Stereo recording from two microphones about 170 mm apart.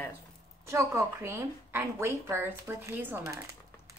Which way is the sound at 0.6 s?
15° right (ahead or behind).